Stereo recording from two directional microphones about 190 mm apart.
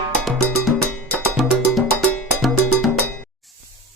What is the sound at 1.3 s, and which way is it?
Music, centre (ahead or behind).